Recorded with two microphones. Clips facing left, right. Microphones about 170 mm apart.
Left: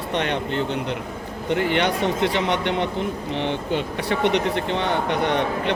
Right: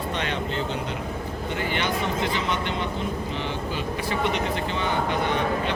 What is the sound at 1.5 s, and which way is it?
A man's voice, 65° left (ahead or behind).